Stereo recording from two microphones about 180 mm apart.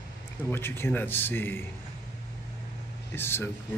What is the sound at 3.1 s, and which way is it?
Speech, 10° left (ahead or behind).